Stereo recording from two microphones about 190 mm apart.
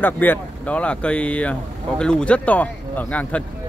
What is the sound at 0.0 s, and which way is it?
Speech, 10° left (ahead or behind).